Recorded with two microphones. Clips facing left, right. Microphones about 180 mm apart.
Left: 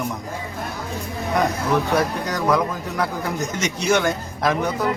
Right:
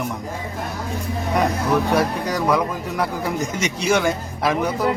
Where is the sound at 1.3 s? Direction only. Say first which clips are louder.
Right 1 dB; 5° right (ahead or behind).